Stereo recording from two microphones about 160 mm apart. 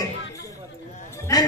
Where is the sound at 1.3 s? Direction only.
25° left (ahead or behind).